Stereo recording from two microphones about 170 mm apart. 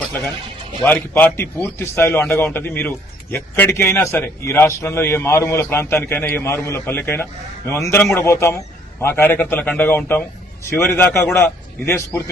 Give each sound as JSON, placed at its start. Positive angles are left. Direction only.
{"t": 0.9, "sound": "a man's voice", "side_deg": 5}